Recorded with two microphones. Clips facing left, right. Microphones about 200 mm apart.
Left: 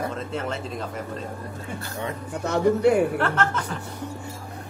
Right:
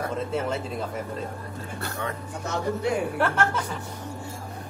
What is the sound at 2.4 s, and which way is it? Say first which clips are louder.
Speech: left 8 dB; 60° left (ahead or behind).